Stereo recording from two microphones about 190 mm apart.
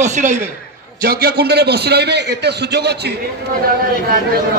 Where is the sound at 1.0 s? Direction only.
55° right (ahead or behind).